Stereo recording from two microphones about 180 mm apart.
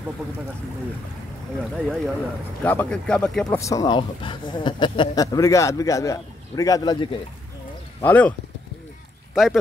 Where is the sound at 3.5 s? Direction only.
15° left (ahead or behind).